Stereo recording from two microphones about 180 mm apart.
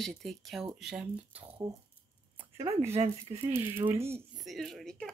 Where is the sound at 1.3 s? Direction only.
30° right (ahead or behind).